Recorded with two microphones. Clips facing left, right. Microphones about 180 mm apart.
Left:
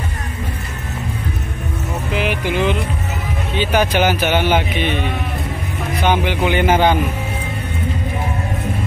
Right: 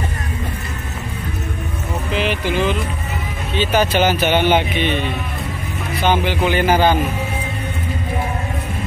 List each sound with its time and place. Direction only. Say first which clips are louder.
2.1 s vehicle: even; 15° left (ahead or behind)
3.5 s speech: even; 10° left (ahead or behind)
6.0 s speech: even; 15° left (ahead or behind)